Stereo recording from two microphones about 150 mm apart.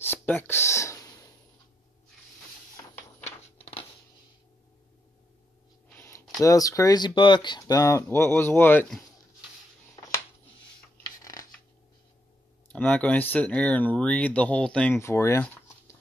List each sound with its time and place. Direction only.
0.0 s a sound: 15° left (ahead or behind)
5.9 s a sound: 15° left (ahead or behind)
6.4 s speech: 20° left (ahead or behind)
11.1 s rub: 25° left (ahead or behind)
12.6 s speech: 10° left (ahead or behind)
15.0 s speech: 20° left (ahead or behind)